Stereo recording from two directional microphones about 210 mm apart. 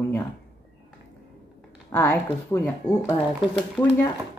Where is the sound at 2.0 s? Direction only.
10° left (ahead or behind).